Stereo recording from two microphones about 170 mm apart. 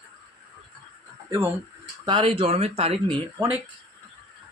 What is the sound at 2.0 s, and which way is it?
Speech, 30° right (ahead or behind).